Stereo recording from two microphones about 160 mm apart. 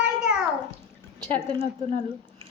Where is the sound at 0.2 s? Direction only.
5° right (ahead or behind).